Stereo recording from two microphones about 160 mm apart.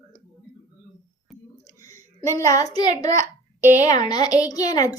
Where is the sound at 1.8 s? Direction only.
20° left (ahead or behind).